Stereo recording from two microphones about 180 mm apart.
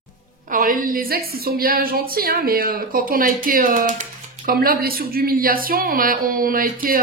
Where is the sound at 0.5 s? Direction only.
50° right (ahead or behind).